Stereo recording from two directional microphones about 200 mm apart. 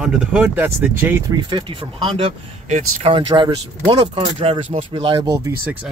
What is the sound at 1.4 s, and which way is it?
Speech, 25° right (ahead or behind).